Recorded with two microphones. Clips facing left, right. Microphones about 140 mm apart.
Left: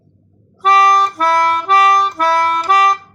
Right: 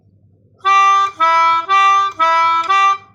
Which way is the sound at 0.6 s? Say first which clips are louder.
Left 2 dB; 35° left (ahead or behind).